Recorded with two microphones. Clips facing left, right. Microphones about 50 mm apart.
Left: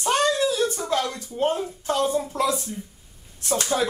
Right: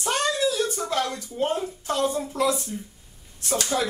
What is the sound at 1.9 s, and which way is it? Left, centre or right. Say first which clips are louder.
Speech: left 2 dB; left.